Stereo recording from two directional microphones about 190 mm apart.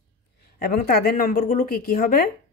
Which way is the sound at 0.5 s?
55° left (ahead or behind).